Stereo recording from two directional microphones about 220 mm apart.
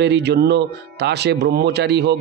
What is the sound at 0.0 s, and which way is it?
Speech, 50° right (ahead or behind).